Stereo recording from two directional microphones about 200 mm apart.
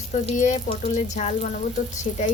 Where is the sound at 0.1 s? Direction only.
40° left (ahead or behind).